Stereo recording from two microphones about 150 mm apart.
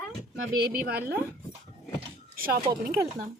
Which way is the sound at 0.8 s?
90° right.